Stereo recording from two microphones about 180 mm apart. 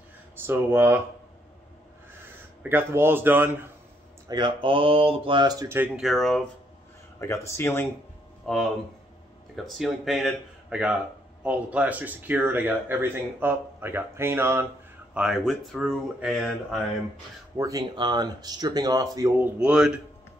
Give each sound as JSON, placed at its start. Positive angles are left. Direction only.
{"t": 0.5, "sound": "speech", "side_deg": -10}
{"t": 2.7, "sound": "speech", "side_deg": -10}
{"t": 4.3, "sound": "speech", "side_deg": -25}
{"t": 7.2, "sound": "speech", "side_deg": 15}
{"t": 8.5, "sound": "speech", "side_deg": 0}
{"t": 9.8, "sound": "speech", "side_deg": 0}
{"t": 15.1, "sound": "speech", "side_deg": -5}
{"t": 17.6, "sound": "speech", "side_deg": -20}
{"t": 19.3, "sound": "speech", "side_deg": -10}